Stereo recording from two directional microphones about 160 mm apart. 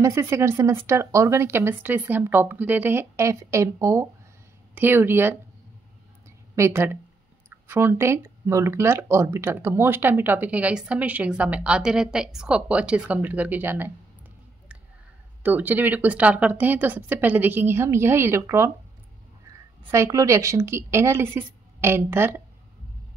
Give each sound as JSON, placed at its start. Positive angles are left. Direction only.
{"t": 0.0, "sound": "speech", "side_deg": -15}
{"t": 6.5, "sound": "a woman's voice", "side_deg": -15}
{"t": 15.4, "sound": "speech", "side_deg": -10}
{"t": 19.9, "sound": "speech", "side_deg": -20}